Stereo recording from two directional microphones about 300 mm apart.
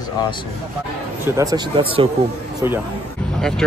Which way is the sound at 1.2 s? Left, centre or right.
Centre.